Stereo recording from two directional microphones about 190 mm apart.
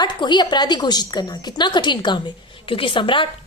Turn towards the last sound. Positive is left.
turn(degrees=25)  # may be behind; listen again after turning